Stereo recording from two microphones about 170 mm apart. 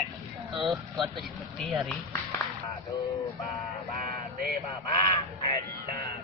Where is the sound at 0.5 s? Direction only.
Centre (ahead or behind).